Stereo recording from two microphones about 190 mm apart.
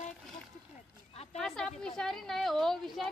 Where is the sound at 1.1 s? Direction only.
35° left (ahead or behind).